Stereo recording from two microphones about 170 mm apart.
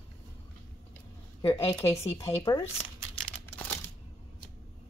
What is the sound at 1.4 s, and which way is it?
Speech, 20° left (ahead or behind).